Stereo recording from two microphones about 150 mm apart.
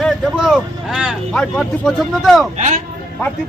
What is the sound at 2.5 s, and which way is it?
Speech, 55° right (ahead or behind).